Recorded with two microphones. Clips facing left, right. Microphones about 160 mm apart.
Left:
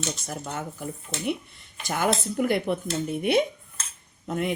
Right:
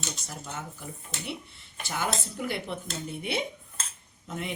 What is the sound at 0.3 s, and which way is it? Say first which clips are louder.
Speech: left 6 dB; 50° left (ahead or behind).